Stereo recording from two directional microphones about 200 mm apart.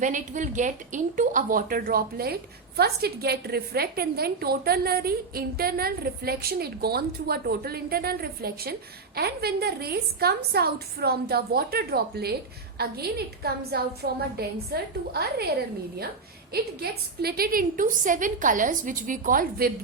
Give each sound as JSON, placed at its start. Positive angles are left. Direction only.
{"t": 0.0, "sound": "a woman's voice", "side_deg": -40}